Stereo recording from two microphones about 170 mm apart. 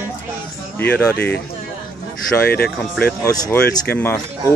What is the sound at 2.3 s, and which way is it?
Speech, 10° left (ahead or behind).